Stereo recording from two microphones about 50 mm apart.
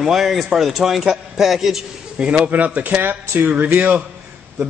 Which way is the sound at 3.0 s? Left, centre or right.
Right.